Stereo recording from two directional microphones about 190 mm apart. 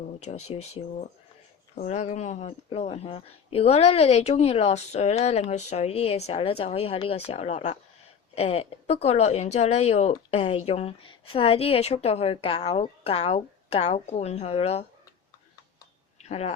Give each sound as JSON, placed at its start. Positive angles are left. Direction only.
{"t": 0.2, "sound": "speech", "side_deg": 35}
{"t": 16.3, "sound": "speech", "side_deg": 35}